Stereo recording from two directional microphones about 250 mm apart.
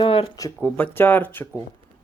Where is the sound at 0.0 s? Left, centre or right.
Left.